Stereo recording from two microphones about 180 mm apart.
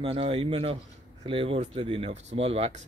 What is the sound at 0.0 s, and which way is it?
Speech, 30° right (ahead or behind).